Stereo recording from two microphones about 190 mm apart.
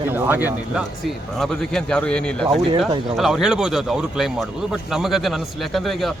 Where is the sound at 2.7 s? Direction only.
25° right (ahead or behind).